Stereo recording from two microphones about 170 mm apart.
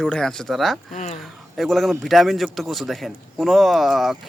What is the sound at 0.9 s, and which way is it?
Speech, 45° left (ahead or behind).